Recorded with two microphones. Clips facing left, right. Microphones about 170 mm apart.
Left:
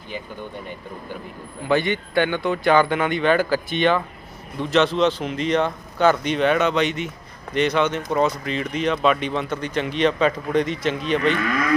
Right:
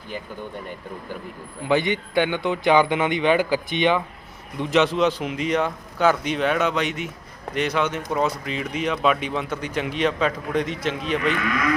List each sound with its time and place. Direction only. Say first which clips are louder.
1.6 s a man's voice: left 1 dB; 15° right (ahead or behind)